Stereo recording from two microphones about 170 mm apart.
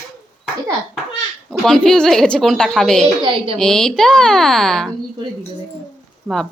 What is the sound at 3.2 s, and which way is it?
Speech, 30° right (ahead or behind).